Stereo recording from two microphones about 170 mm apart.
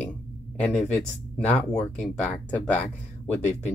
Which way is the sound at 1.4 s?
5° left (ahead or behind).